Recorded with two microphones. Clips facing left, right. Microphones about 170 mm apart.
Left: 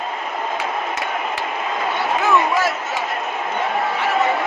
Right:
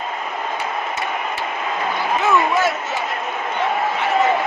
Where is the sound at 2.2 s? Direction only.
Centre (ahead or behind).